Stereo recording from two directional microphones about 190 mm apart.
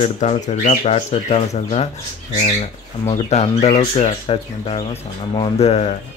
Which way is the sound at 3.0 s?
35° left (ahead or behind).